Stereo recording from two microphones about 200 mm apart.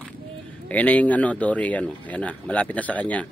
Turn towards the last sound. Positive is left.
turn(degrees=5)  # may be behind; listen again after turning